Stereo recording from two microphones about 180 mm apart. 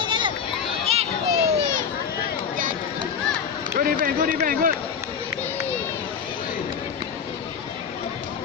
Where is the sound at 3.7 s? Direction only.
50° right (ahead or behind).